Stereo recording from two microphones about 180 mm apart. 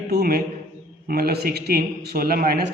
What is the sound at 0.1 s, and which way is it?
A man's voice, 55° right (ahead or behind).